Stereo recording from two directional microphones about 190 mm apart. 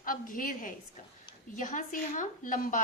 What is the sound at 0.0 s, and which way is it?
A woman's voice, 45° left (ahead or behind).